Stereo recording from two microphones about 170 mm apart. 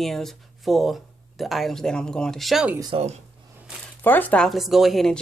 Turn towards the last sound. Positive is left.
turn(degrees=0)  # may be behind; listen again after turning